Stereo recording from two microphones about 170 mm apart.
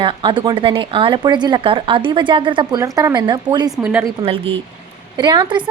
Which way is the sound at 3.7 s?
10° right (ahead or behind).